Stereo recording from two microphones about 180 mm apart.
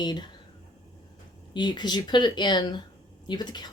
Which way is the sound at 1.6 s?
25° left (ahead or behind).